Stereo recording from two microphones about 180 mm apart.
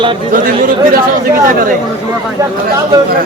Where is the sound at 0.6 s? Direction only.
50° right (ahead or behind).